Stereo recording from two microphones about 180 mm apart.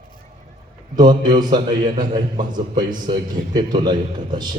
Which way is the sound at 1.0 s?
25° right (ahead or behind).